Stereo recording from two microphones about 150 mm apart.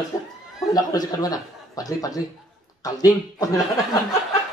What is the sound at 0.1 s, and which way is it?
Chuckle, 20° left (ahead or behind).